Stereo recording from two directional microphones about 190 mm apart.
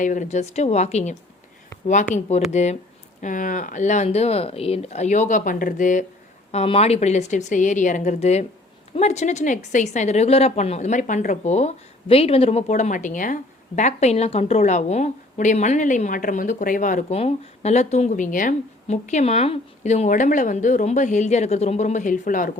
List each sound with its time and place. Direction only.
0.0 s a woman's voice: 40° left (ahead or behind)
2.5 s a woman's voice: 35° left (ahead or behind)